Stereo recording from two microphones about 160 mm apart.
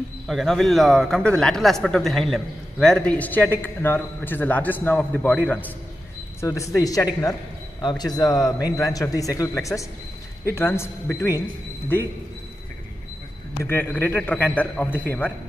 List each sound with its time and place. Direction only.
0.3 s speech: centre (ahead or behind)
6.4 s a man's voice: 20° left (ahead or behind)
13.7 s a man's voice: 15° left (ahead or behind)